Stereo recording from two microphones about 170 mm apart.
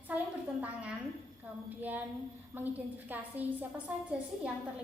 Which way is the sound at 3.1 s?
10° right (ahead or behind).